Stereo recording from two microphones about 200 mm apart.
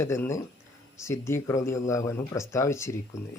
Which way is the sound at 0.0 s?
15° left (ahead or behind).